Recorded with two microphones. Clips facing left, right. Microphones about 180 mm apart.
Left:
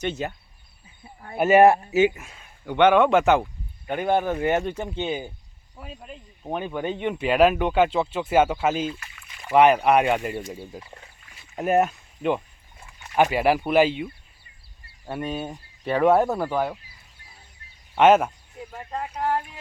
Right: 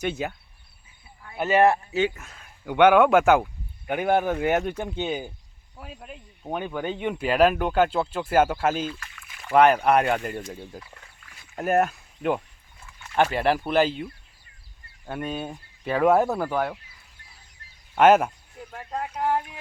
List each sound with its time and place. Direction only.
0.0 s speech: centre (ahead or behind)
1.0 s a sound: 45° left (ahead or behind)
1.5 s speech: 15° left (ahead or behind)
2.6 s speech: 5° right (ahead or behind)
5.7 s speech: centre (ahead or behind)
10.8 s duck: 20° left (ahead or behind)
11.3 s a sound: centre (ahead or behind)
13.1 s speech: 5° left (ahead or behind)
17.9 s speech: centre (ahead or behind)
19.2 s speech: 15° right (ahead or behind)